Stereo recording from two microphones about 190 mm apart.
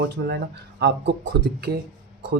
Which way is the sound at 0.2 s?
55° right (ahead or behind).